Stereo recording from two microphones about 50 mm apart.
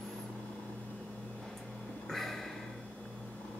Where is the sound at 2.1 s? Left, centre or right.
Centre.